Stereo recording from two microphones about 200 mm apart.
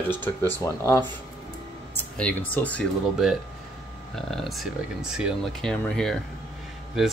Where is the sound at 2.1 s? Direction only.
5° left (ahead or behind).